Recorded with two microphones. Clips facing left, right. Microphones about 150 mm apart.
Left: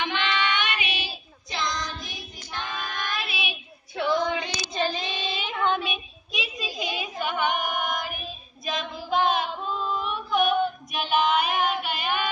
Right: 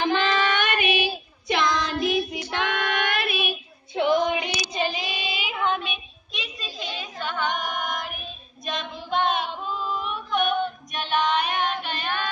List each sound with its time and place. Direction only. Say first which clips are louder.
0.0 s child singing: right 5 dB; 40° right (ahead or behind)
3.9 s child singing: right 3 dB; 15° right (ahead or behind); by 12.3 s 10° left (ahead or behind)